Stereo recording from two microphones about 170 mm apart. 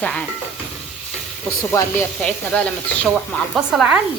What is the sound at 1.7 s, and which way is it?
Stir, 10° left (ahead or behind).